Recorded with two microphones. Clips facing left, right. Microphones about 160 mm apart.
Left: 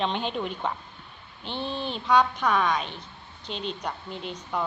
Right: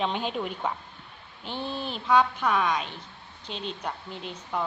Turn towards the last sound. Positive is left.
turn(degrees=0)  # may be behind; listen again after turning